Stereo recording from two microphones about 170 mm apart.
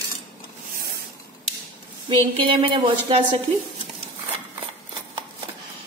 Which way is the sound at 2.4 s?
30° right (ahead or behind).